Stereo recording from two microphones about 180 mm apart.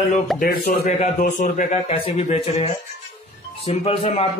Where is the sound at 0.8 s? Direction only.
40° left (ahead or behind).